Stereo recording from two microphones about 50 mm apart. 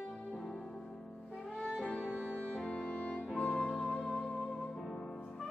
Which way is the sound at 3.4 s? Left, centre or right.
Centre.